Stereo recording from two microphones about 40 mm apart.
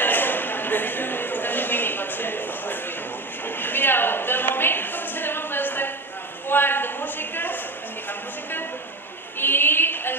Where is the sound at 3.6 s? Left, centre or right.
Left.